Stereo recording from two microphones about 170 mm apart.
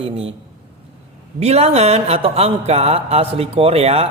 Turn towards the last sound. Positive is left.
turn(degrees=-35)  # may be behind; listen again after turning